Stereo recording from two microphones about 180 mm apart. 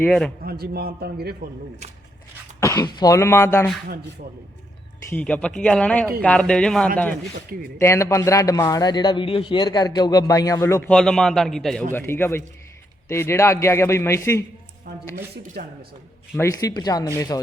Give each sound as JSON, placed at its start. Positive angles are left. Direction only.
{"t": 0.0, "sound": "speech", "side_deg": 5}
{"t": 0.4, "sound": "a man's voice", "side_deg": -60}
{"t": 2.6, "sound": "speech", "side_deg": 15}
{"t": 5.0, "sound": "speech", "side_deg": 10}
{"t": 7.8, "sound": "speech", "side_deg": 15}
{"t": 15.6, "sound": "a man's voice", "side_deg": -60}
{"t": 16.3, "sound": "speech", "side_deg": 15}